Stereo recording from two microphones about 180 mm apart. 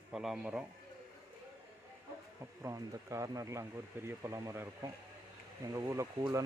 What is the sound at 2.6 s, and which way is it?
Speech, 15° right (ahead or behind).